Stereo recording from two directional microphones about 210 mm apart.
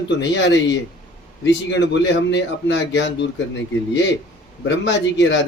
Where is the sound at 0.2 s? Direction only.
55° left (ahead or behind).